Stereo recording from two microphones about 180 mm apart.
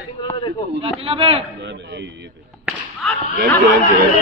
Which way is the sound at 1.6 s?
75° right (ahead or behind).